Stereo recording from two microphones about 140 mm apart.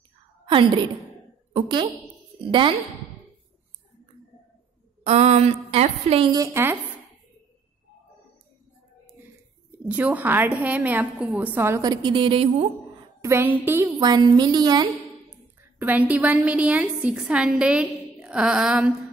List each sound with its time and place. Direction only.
0.5 s a woman's voice: 35° right (ahead or behind)
5.0 s speech: 50° right (ahead or behind)
6.3 s a woman's voice: 20° right (ahead or behind)
9.8 s a woman's voice: 10° right (ahead or behind); by 12.6 s 40° right (ahead or behind)
13.2 s a woman's voice: 15° right (ahead or behind)
13.9 s a woman's voice: 30° right (ahead or behind)
15.6 s a woman's voice: 10° right (ahead or behind)